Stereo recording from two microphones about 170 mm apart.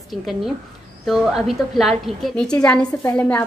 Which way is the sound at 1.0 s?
Centre (ahead or behind).